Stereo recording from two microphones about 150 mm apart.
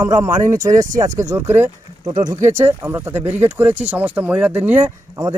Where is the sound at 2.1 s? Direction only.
25° right (ahead or behind).